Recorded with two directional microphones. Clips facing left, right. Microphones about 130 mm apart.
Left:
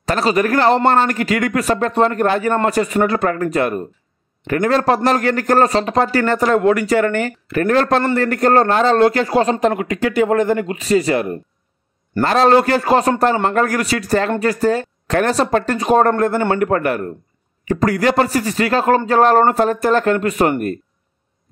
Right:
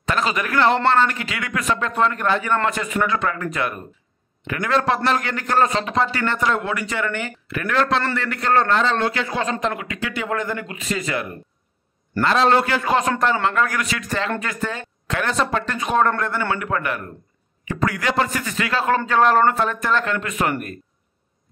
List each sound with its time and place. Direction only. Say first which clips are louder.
0.0 s a man's voice: left 6 dB; 35° left (ahead or behind)